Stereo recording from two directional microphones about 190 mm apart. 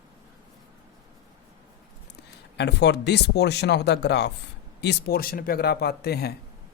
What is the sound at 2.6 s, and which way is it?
Speech, 65° left (ahead or behind).